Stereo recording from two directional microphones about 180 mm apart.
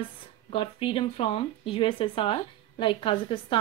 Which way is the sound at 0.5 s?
30° left (ahead or behind).